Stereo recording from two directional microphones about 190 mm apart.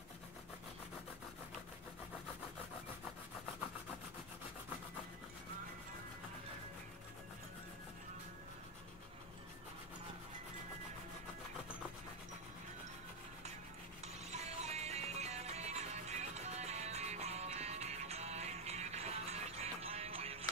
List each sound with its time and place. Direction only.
14.0 s music: 35° right (ahead or behind)